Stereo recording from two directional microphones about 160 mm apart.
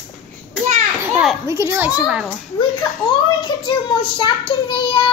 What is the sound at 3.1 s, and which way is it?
A child's voice, 30° left (ahead or behind).